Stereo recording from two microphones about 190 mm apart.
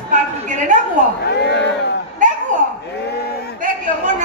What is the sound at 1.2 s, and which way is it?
Crowd, 60° left (ahead or behind).